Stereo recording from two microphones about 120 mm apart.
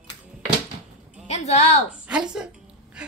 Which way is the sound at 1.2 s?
70° left (ahead or behind).